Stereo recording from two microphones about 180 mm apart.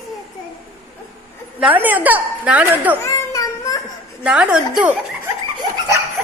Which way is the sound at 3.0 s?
15° left (ahead or behind).